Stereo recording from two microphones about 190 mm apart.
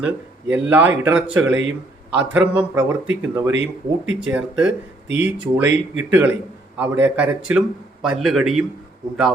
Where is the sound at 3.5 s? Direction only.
85° right.